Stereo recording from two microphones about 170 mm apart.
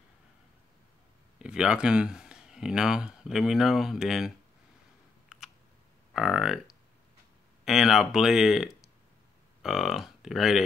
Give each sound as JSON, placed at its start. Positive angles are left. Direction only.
{"t": 1.4, "sound": "speech", "side_deg": -5}
{"t": 6.1, "sound": "speech", "side_deg": 0}